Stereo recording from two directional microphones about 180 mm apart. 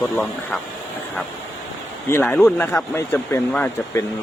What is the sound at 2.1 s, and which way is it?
Speech, 15° left (ahead or behind).